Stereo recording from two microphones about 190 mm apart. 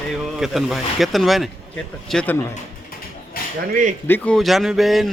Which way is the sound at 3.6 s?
50° right (ahead or behind).